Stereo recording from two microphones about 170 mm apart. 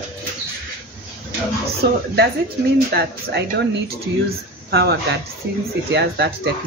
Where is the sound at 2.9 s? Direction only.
70° right (ahead or behind).